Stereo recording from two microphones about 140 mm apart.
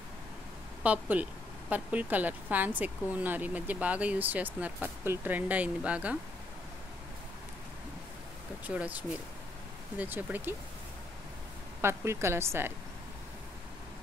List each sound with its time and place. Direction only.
0.8 s a woman's voice: 10° right (ahead or behind)
8.6 s a woman's voice: 10° right (ahead or behind)
11.8 s a woman's voice: 20° right (ahead or behind)